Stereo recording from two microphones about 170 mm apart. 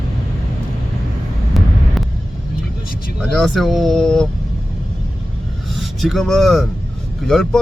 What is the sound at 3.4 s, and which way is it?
Speech, centre (ahead or behind).